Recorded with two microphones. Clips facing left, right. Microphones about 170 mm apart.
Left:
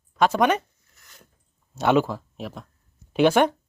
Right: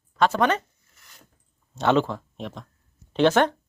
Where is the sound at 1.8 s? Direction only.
10° left (ahead or behind).